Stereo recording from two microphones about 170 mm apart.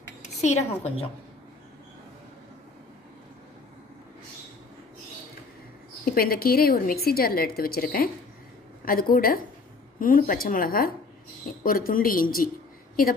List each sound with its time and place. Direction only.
0.3 s a woman's voice: 40° left (ahead or behind)
6.0 s a woman's voice: 60° left (ahead or behind)